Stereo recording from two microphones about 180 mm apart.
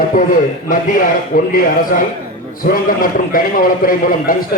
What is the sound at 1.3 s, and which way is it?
Speech, 50° left (ahead or behind).